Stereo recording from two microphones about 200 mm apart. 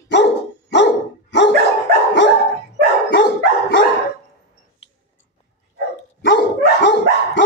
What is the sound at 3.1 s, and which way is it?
Dog, 60° left (ahead or behind).